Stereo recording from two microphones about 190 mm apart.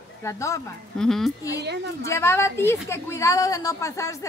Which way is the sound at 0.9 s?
Centre (ahead or behind).